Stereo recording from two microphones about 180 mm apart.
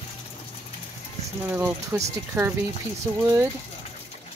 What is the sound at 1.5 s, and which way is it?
Speech, 15° right (ahead or behind).